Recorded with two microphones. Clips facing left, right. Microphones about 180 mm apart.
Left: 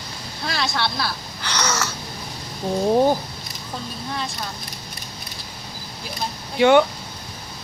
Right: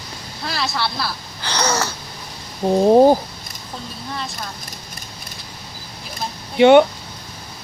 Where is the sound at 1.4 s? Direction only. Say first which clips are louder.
Right 4 dB; 30° right (ahead or behind).